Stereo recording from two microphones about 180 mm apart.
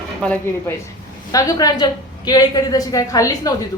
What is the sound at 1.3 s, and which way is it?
A woman's voice, 20° left (ahead or behind).